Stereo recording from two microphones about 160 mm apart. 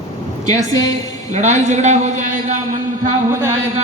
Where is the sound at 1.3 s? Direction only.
45° right (ahead or behind).